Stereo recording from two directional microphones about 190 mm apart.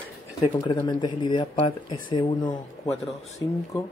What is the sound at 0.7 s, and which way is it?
Speech, 20° left (ahead or behind).